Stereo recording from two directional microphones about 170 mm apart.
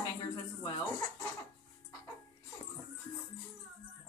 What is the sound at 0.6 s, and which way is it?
Speech, 20° left (ahead or behind).